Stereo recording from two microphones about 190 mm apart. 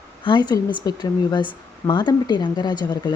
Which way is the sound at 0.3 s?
20° left (ahead or behind).